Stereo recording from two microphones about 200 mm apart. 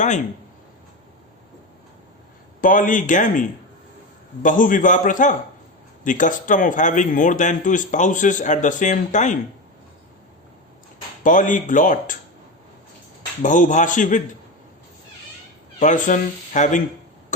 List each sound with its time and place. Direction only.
2.6 s speech: 40° left (ahead or behind)
4.4 s speech: 40° left (ahead or behind)
11.2 s speech: 40° left (ahead or behind)
13.4 s speech: 40° left (ahead or behind)
15.8 s speech: 40° left (ahead or behind)